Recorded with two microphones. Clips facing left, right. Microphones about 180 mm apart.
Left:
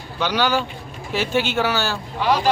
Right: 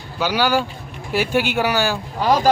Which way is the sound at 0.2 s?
10° right (ahead or behind).